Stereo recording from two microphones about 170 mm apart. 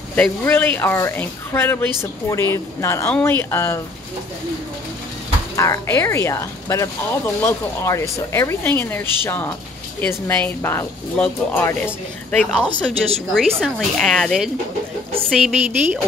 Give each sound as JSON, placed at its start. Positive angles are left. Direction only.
{"t": 0.1, "sound": "speech", "side_deg": 10}
{"t": 5.6, "sound": "a woman's voice", "side_deg": 15}